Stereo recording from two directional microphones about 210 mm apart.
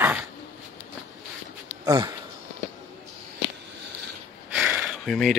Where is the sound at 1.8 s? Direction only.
15° right (ahead or behind).